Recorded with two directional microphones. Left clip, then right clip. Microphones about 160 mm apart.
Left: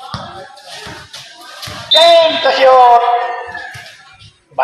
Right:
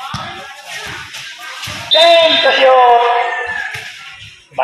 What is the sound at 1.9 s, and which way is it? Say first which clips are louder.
Basketball bounce: left 1 dB; 15° right (ahead or behind).